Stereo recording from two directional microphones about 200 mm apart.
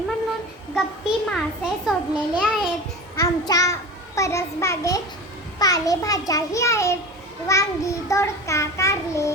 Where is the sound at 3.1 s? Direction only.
15° left (ahead or behind).